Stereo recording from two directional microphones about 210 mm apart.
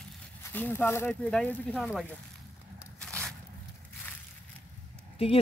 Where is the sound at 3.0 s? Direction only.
5° left (ahead or behind).